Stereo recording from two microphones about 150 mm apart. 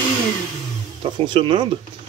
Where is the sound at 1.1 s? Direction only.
35° right (ahead or behind).